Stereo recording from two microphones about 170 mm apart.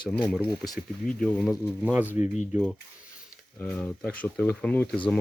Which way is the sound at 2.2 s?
45° left (ahead or behind).